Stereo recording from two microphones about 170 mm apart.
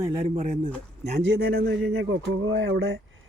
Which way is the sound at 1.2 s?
80° right.